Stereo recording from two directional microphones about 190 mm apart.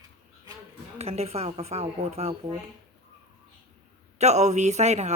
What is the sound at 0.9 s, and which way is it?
Speech, 35° right (ahead or behind).